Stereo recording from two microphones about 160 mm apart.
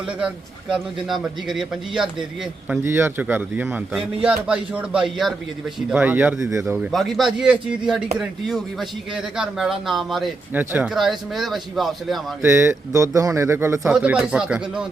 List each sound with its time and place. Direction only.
0.2 s speech: 5° right (ahead or behind)
2.8 s a man's voice: 15° right (ahead or behind)
6.7 s speech: centre (ahead or behind)
10.5 s speech: 10° right (ahead or behind)
12.4 s a man's voice: 15° right (ahead or behind)